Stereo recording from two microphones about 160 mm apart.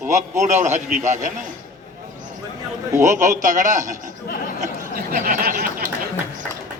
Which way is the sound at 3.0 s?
50° right (ahead or behind).